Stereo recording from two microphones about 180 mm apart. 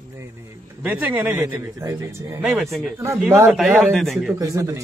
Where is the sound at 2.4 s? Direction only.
5° right (ahead or behind).